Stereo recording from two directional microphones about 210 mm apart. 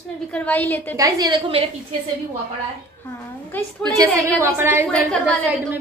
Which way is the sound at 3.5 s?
10° left (ahead or behind).